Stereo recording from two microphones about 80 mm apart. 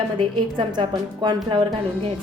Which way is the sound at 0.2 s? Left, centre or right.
Right.